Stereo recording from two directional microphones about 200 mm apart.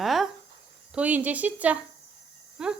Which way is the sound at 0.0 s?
Centre (ahead or behind).